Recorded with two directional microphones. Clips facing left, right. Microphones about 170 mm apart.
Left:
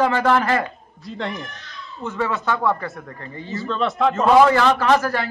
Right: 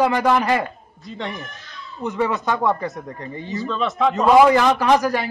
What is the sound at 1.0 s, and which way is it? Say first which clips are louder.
Speech: left 2 dB; centre (ahead or behind).